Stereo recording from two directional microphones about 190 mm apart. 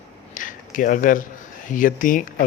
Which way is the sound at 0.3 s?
45° left (ahead or behind).